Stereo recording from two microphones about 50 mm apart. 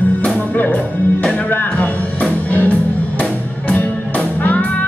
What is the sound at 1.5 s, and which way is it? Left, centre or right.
Music, left.